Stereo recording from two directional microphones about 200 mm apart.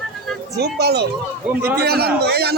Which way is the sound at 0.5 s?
55° right (ahead or behind).